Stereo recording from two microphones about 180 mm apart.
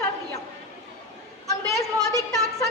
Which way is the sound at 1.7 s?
15° left (ahead or behind).